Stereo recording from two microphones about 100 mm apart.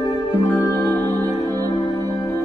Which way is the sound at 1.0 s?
35° right (ahead or behind).